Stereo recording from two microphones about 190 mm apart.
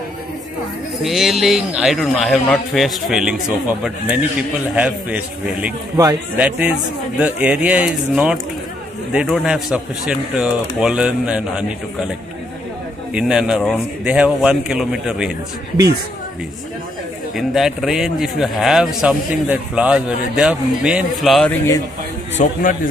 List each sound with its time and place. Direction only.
1.0 s a man's voice: centre (ahead or behind)
13.1 s a man's voice: 5° right (ahead or behind)
17.4 s a man's voice: centre (ahead or behind)
22.4 s a man's voice: 45° left (ahead or behind)